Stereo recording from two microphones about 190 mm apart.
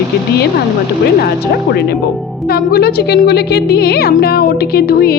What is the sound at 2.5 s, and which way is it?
A woman's voice, 55° left (ahead or behind).